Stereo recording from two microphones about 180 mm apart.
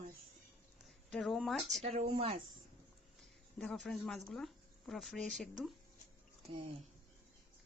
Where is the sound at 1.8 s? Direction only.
35° right (ahead or behind).